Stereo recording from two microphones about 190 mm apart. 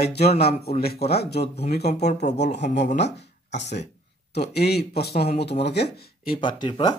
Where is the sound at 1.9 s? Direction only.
35° left (ahead or behind).